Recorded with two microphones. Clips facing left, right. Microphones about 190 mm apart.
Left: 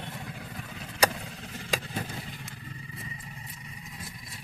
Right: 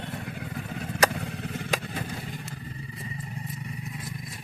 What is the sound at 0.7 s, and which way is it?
Vehicle, 50° right (ahead or behind).